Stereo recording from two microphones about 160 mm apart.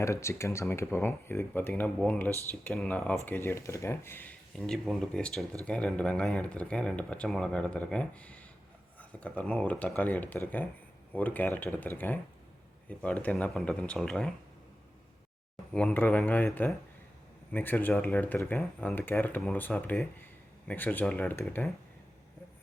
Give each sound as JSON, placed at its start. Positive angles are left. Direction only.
{"t": 0.0, "sound": "speech", "side_deg": 15}
{"t": 4.5, "sound": "speech", "side_deg": 0}
{"t": 15.7, "sound": "speech", "side_deg": 10}